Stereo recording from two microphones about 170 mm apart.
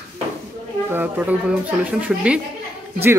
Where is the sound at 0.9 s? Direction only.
10° right (ahead or behind).